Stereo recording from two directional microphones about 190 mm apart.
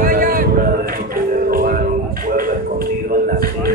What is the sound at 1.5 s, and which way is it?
Music, 50° right (ahead or behind).